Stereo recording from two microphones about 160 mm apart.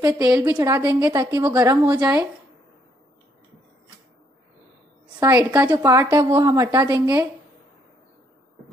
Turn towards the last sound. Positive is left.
turn(degrees=-25)  # may be behind; listen again after turning